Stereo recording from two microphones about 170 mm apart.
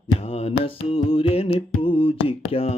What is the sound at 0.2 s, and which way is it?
Music, 35° left (ahead or behind).